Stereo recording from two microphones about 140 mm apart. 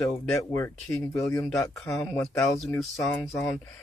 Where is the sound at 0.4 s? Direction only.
20° left (ahead or behind).